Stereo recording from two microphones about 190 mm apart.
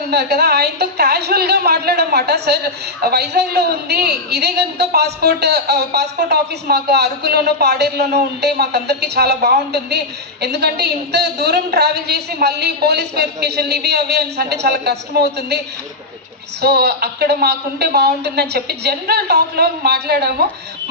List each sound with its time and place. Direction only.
0.1 s a woman's voice: 60° right (ahead or behind)